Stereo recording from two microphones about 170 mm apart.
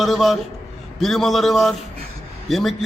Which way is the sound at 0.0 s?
Centre (ahead or behind).